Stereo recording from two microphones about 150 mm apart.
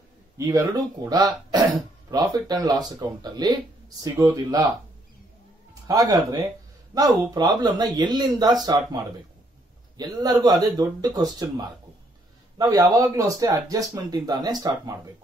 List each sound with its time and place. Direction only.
0.4 s speech: 20° right (ahead or behind)
5.9 s speech: 25° right (ahead or behind)